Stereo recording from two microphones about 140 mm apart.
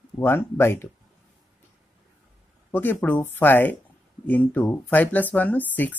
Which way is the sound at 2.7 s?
15° left (ahead or behind).